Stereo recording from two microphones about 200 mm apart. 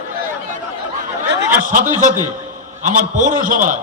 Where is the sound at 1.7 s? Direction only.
40° right (ahead or behind).